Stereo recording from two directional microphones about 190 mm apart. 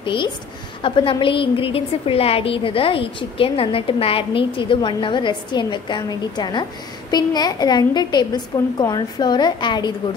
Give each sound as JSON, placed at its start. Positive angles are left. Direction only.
{"t": 0.0, "sound": "a woman's voice", "side_deg": 25}